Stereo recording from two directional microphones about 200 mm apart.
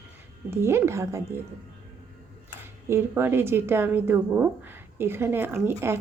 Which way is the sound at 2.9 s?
10° right (ahead or behind).